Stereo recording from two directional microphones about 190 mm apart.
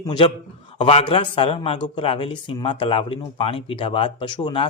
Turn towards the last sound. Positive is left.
turn(degrees=25)  # may be behind; listen again after turning